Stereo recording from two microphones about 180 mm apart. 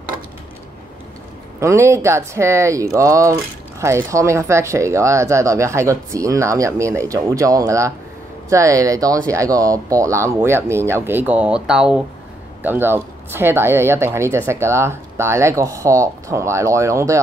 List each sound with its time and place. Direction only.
1.6 s speech: 15° right (ahead or behind)